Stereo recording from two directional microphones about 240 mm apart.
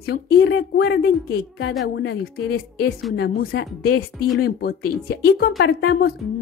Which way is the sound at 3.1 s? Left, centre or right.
Left.